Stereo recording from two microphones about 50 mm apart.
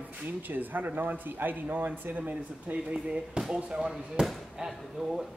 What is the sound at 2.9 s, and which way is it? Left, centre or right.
Speech, centre.